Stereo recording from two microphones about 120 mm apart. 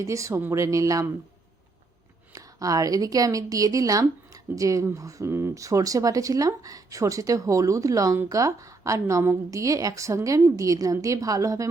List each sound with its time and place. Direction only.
0.0 s speech: 25° right (ahead or behind)
2.3 s speech: 30° right (ahead or behind)